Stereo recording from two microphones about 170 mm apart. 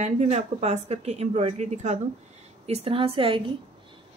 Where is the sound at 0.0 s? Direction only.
40° right (ahead or behind).